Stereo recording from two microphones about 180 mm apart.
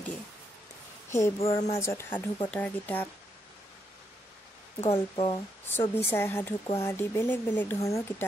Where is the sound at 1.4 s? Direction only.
35° left (ahead or behind).